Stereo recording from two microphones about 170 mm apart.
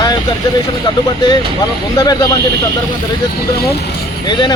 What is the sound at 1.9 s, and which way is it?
Speech, 25° left (ahead or behind).